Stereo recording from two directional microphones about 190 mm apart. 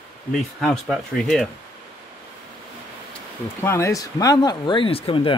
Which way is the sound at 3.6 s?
15° left (ahead or behind).